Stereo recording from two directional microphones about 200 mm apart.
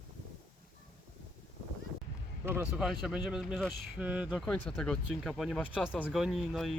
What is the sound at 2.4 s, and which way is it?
Speech, 10° right (ahead or behind).